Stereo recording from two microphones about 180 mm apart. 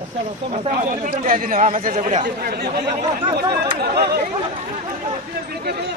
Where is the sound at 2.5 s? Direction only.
60° right (ahead or behind).